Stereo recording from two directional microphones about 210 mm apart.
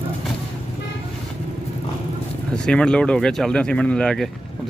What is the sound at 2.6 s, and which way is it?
Speech, 5° left (ahead or behind).